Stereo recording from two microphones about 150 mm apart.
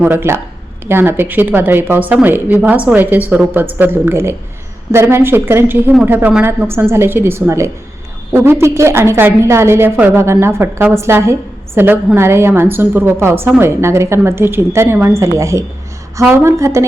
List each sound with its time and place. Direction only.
0.0 s a woman's voice: 15° right (ahead or behind)